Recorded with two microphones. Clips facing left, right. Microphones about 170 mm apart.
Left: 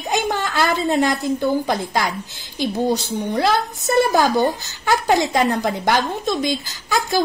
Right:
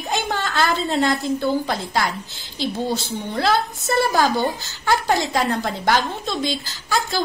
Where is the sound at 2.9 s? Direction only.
20° left (ahead or behind).